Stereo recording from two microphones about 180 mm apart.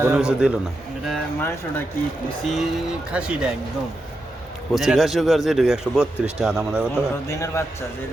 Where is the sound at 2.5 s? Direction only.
Centre (ahead or behind).